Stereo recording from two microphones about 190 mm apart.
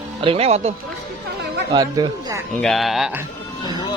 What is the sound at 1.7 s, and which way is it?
Speech, 20° right (ahead or behind).